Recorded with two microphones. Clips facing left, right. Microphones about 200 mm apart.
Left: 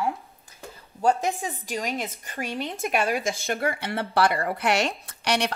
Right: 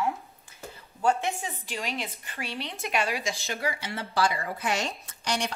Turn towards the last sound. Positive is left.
turn(degrees=70)  # may be behind; listen again after turning